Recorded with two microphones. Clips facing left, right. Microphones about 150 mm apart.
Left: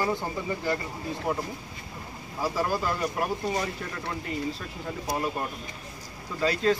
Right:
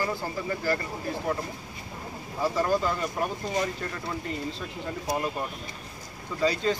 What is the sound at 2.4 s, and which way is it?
Speech, 10° left (ahead or behind).